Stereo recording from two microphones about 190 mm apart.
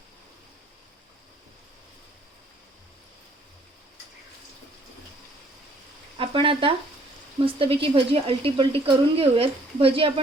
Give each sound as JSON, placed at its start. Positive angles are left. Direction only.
{"t": 6.1, "sound": "speech", "side_deg": -30}